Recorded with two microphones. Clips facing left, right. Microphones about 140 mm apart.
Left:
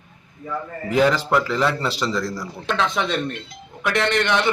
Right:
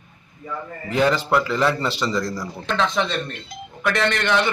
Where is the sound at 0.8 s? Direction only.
Centre (ahead or behind).